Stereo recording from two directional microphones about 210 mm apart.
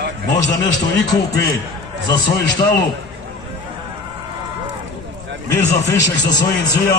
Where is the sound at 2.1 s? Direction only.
20° left (ahead or behind).